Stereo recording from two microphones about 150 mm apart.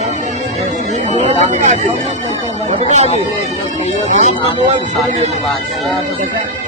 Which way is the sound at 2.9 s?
50° right (ahead or behind).